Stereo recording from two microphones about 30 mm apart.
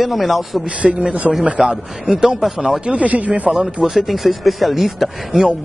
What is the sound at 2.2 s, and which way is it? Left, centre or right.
Speech, centre.